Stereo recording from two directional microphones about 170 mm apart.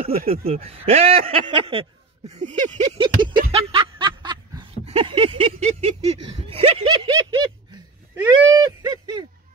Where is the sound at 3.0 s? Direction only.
30° right (ahead or behind).